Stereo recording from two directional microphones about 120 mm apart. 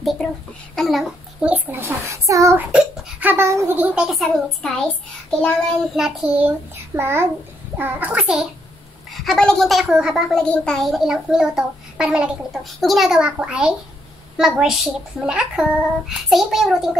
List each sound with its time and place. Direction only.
0.0 s a sound: centre (ahead or behind)
0.7 s a child's voice: centre (ahead or behind)
1.5 s a child's voice: 15° right (ahead or behind)
2.7 s a child's voice: 10° right (ahead or behind)
5.9 s a child's voice: 5° right (ahead or behind)
10.4 s a child's voice: 5° left (ahead or behind)